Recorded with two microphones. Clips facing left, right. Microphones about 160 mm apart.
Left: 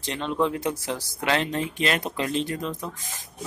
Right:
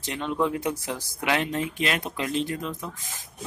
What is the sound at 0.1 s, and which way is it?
Speech, 10° right (ahead or behind).